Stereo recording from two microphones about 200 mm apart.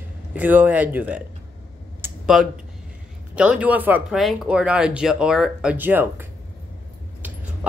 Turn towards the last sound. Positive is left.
turn(degrees=-10)  # may be behind; listen again after turning